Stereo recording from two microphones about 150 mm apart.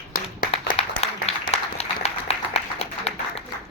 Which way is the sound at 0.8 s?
45° left (ahead or behind).